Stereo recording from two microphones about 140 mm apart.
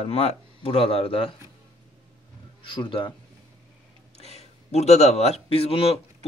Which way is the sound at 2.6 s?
35° left (ahead or behind).